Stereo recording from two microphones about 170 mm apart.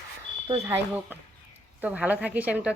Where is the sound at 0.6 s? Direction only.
15° right (ahead or behind).